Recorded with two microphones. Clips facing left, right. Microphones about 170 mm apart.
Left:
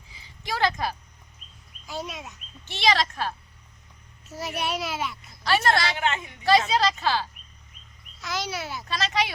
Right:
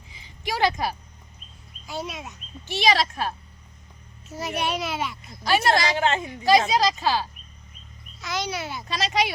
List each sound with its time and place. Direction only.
0.1 s a sound: 15° right (ahead or behind)
1.9 s a child's voice: centre (ahead or behind)
2.6 s a woman's voice: 10° right (ahead or behind)
4.3 s a child's voice: centre (ahead or behind)
5.4 s a woman's voice: 15° right (ahead or behind)
6.0 s a woman's voice: 35° right (ahead or behind)
6.7 s a woman's voice: 15° right (ahead or behind)
8.2 s a child's voice: centre (ahead or behind)
8.8 s a woman's voice: 15° right (ahead or behind)